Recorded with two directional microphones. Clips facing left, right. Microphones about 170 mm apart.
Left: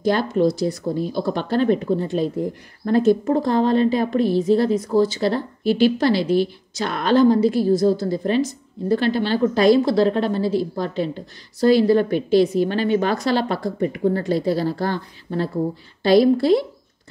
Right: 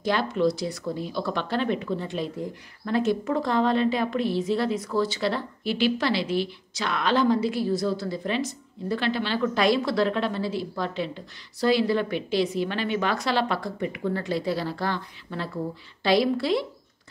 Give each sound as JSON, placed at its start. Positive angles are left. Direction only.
{"t": 0.0, "sound": "a woman's voice", "side_deg": 45}